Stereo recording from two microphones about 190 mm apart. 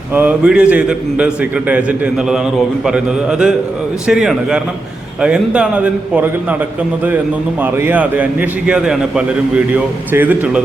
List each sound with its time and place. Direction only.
0.1 s a man's voice: 10° right (ahead or behind)
7.6 s a man's voice: 10° right (ahead or behind)